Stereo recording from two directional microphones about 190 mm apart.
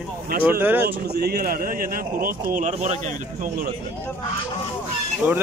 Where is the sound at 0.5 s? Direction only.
10° right (ahead or behind).